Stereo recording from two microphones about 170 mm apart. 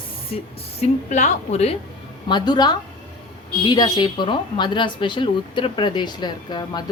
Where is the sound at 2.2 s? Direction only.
25° left (ahead or behind).